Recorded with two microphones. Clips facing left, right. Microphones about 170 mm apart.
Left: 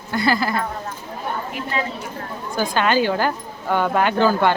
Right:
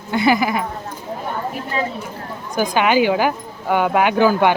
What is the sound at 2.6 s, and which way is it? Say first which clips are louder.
Speech: right 3 dB; 15° right (ahead or behind).